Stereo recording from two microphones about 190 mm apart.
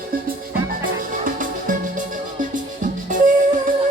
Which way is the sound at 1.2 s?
45° right (ahead or behind).